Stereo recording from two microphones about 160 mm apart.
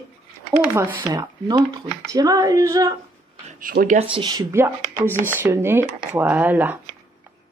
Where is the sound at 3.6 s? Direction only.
60° right (ahead or behind).